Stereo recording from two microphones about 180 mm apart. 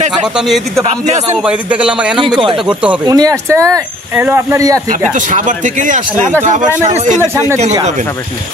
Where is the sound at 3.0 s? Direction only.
20° right (ahead or behind).